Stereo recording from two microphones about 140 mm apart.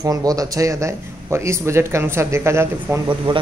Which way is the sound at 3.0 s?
35° right (ahead or behind).